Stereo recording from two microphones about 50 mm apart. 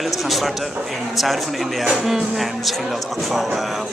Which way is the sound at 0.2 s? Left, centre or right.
Centre.